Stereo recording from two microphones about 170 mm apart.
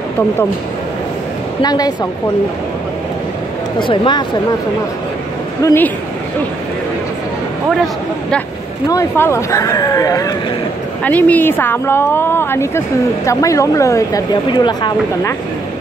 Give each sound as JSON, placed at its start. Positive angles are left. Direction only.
{"t": 1.6, "sound": "speech", "side_deg": 25}
{"t": 3.8, "sound": "speech", "side_deg": 30}
{"t": 5.6, "sound": "speech", "side_deg": 15}
{"t": 8.8, "sound": "speech", "side_deg": 15}
{"t": 11.1, "sound": "speech", "side_deg": 10}